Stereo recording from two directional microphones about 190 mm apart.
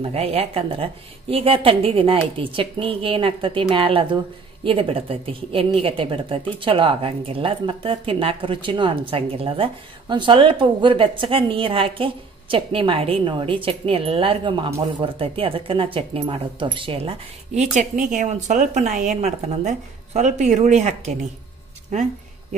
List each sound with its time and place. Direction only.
0.0 s speech: 30° right (ahead or behind)